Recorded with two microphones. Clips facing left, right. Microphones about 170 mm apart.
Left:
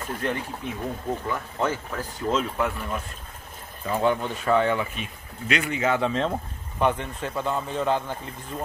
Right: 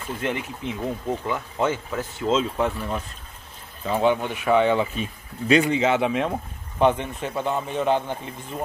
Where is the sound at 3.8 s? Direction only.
20° right (ahead or behind).